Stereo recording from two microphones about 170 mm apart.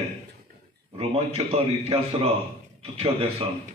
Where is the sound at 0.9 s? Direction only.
35° right (ahead or behind).